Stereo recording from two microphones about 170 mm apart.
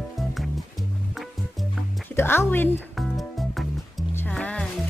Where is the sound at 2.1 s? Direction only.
15° left (ahead or behind).